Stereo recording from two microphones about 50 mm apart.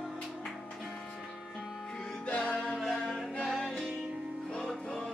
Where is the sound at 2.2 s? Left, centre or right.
Left.